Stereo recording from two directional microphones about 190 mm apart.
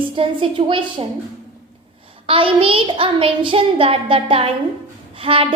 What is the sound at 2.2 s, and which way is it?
Child singing, 30° right (ahead or behind).